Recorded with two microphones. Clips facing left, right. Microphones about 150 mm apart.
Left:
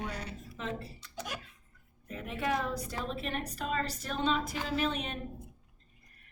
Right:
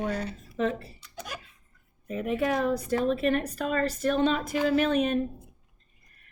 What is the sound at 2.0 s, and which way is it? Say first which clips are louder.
A woman's voice: right 8 dB; 55° right (ahead or behind).